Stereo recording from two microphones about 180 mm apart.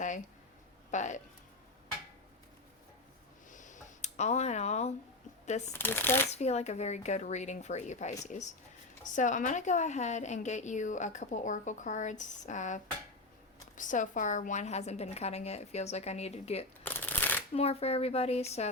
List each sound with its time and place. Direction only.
0.9 s speech: 40° left (ahead or behind)
3.5 s a sound: 45° left (ahead or behind)
5.5 s a woman's voice: 40° left (ahead or behind)
5.7 s speech: 10° left (ahead or behind)
6.3 s a woman's voice: 35° left (ahead or behind)
16.8 s shuffling cards: 10° left (ahead or behind)
17.5 s a woman's voice: 35° left (ahead or behind)